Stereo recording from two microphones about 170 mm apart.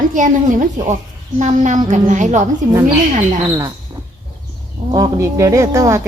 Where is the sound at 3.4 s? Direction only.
25° right (ahead or behind).